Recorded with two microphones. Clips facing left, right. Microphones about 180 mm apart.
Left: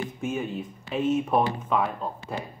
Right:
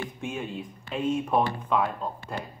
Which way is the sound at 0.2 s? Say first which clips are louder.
Left 5 dB; centre (ahead or behind).